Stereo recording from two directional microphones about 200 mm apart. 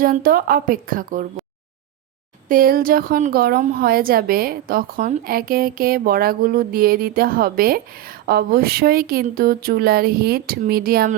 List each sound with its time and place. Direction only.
0.0 s a woman's voice: 45° right (ahead or behind)
2.5 s a woman's voice: 45° right (ahead or behind)